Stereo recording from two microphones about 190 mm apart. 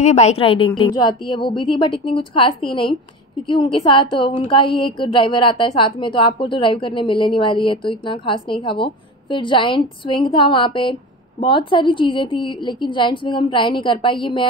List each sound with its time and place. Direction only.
0.0 s a woman's voice: 35° left (ahead or behind)